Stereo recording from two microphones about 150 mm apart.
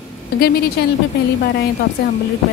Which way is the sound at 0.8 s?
90° left.